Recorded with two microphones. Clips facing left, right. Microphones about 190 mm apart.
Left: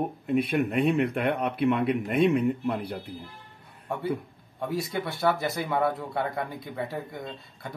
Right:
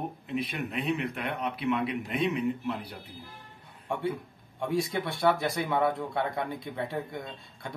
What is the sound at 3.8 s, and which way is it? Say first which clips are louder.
Speech: even; centre (ahead or behind).